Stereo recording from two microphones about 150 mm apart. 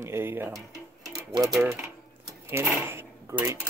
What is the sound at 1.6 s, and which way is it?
Speech, 10° right (ahead or behind).